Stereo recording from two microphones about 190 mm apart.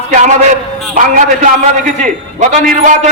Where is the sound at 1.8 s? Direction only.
40° right (ahead or behind).